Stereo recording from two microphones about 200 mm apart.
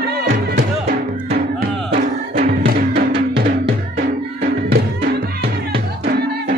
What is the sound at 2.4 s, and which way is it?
Music, 50° right (ahead or behind).